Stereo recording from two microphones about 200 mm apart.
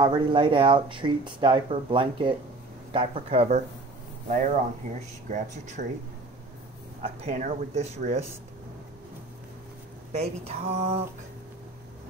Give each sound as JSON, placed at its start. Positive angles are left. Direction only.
{"t": 0.0, "sound": "speech", "side_deg": -25}
{"t": 5.3, "sound": "speech", "side_deg": -35}
{"t": 7.0, "sound": "speech", "side_deg": -35}
{"t": 10.1, "sound": "speech", "side_deg": -30}